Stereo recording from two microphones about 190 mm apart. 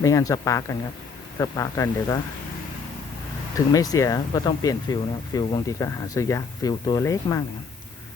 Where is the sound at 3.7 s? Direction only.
20° left (ahead or behind).